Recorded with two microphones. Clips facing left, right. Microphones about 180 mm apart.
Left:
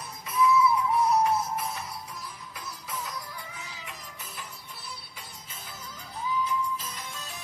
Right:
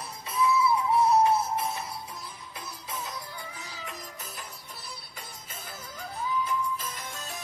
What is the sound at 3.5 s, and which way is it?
Music, 35° right (ahead or behind).